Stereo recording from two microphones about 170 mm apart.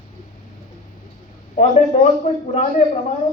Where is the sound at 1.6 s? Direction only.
40° left (ahead or behind).